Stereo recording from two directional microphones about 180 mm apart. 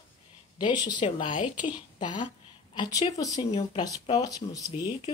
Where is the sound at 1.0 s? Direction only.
35° left (ahead or behind).